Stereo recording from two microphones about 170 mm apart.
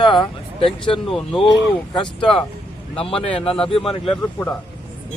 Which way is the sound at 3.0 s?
35° left (ahead or behind).